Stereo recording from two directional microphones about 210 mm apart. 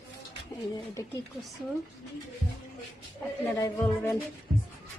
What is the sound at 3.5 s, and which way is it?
Speech, 15° left (ahead or behind).